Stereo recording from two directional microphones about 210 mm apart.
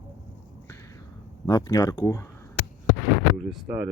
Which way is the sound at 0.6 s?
15° left (ahead or behind).